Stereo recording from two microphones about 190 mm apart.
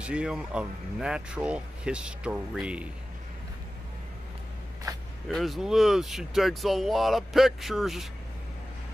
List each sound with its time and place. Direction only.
0.0 s speech: 5° right (ahead or behind)
4.9 s zipper: 20° right (ahead or behind)
5.3 s speech: centre (ahead or behind)